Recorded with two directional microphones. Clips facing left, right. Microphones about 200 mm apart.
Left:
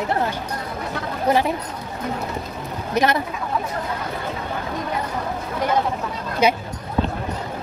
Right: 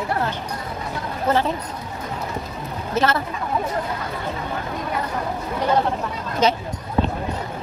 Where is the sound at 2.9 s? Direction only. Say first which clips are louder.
Left 1 dB; 15° left (ahead or behind).